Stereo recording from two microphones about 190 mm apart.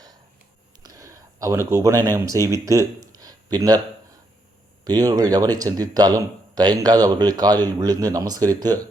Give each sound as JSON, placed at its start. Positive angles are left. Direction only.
{"t": 0.8, "sound": "speech", "side_deg": -15}
{"t": 4.9, "sound": "speech", "side_deg": -20}